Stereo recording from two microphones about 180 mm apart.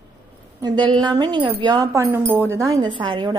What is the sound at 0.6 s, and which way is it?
A woman's voice, 25° right (ahead or behind).